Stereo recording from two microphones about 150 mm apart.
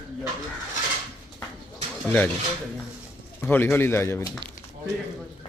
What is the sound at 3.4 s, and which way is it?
Speech, 15° left (ahead or behind).